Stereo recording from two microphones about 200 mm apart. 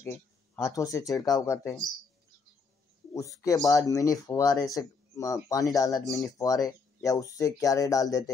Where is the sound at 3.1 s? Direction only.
15° left (ahead or behind).